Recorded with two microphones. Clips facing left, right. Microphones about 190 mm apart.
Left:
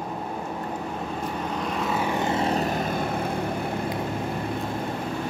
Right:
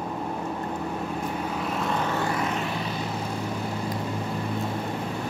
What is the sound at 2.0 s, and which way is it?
Vehicle, 20° left (ahead or behind).